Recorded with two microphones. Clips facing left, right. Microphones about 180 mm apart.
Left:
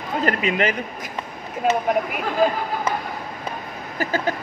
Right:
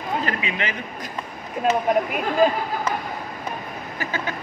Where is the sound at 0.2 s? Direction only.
45° left (ahead or behind).